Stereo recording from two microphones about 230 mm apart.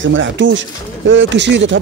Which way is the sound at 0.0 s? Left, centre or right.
Right.